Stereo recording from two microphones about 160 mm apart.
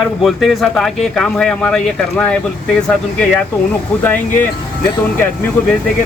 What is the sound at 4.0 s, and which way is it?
Speech, 10° left (ahead or behind).